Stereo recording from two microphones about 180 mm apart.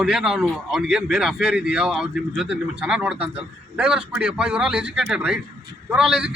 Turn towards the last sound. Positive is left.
turn(degrees=-5)  # may be behind; listen again after turning